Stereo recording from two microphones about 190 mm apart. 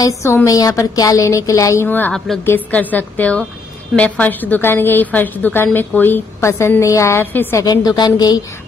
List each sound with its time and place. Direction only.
0.0 s a woman's voice: 15° left (ahead or behind)